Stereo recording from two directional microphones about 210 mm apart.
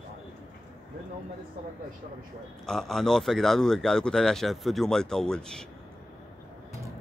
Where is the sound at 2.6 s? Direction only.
Centre (ahead or behind).